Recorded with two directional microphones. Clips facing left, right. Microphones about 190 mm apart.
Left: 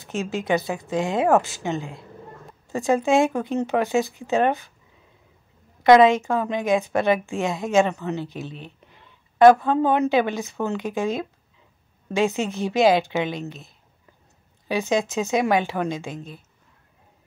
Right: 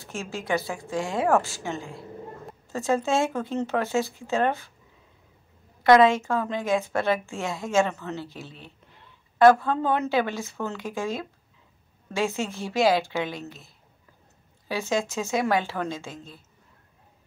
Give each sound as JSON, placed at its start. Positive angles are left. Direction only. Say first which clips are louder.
{"t": 0.0, "sound": "a woman's voice", "louder": "left 6 dB", "side_deg": 20}
{"t": 5.9, "sound": "a woman's voice", "louder": "left 3 dB", "side_deg": 20}
{"t": 14.7, "sound": "a woman's voice", "louder": "left 4 dB", "side_deg": 20}